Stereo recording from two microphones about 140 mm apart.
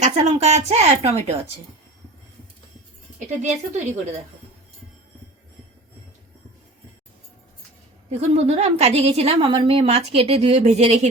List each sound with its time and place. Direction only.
0.0 s a woman's voice: 50° right (ahead or behind)
3.2 s speech: 60° right (ahead or behind)
8.1 s a woman's voice: 50° right (ahead or behind)